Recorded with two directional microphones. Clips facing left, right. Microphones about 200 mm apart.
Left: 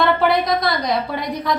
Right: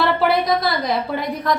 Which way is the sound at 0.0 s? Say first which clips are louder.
Left 1 dB; 5° right (ahead or behind).